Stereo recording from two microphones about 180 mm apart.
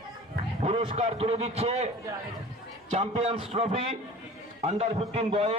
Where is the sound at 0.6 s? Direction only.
35° right (ahead or behind).